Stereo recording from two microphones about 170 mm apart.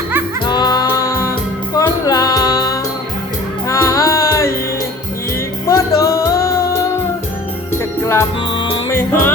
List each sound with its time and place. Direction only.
0.4 s music: 25° left (ahead or behind)
5.6 s music: 20° left (ahead or behind)
7.7 s music: 15° left (ahead or behind)